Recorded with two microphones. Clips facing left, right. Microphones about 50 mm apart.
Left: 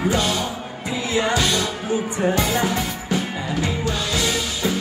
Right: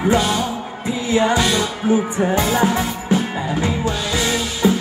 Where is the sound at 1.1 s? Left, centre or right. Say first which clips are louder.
Right 4 dB; right.